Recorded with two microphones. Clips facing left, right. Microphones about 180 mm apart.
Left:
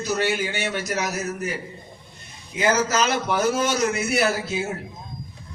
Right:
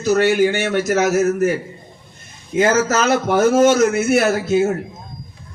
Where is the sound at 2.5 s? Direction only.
50° right (ahead or behind).